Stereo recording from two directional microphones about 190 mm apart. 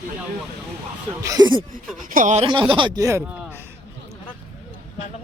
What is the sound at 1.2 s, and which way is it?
Speech, 20° right (ahead or behind).